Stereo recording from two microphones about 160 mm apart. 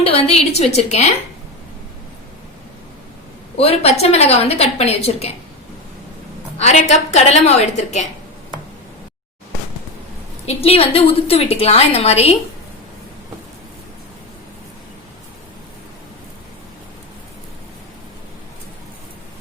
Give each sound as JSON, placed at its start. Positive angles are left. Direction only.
{"t": 0.0, "sound": "a woman's voice", "side_deg": 40}
{"t": 3.6, "sound": "a woman's voice", "side_deg": 40}
{"t": 6.6, "sound": "a woman's voice", "side_deg": 45}
{"t": 10.4, "sound": "a woman's voice", "side_deg": 35}